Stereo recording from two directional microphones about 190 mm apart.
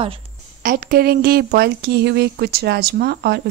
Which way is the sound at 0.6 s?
50° right (ahead or behind).